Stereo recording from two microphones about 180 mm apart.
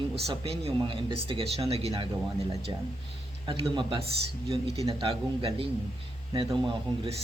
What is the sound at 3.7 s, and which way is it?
Speech, 25° right (ahead or behind).